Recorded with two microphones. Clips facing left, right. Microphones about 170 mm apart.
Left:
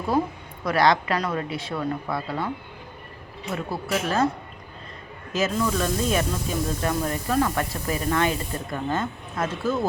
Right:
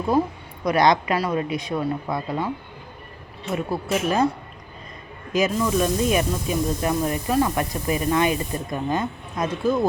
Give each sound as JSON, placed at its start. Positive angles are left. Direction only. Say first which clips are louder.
{"t": 0.6, "sound": "speech", "louder": "right 2 dB", "side_deg": -20}
{"t": 3.5, "sound": "speech", "louder": "right 3 dB", "side_deg": -15}
{"t": 5.3, "sound": "speech", "louder": "right 3 dB", "side_deg": -15}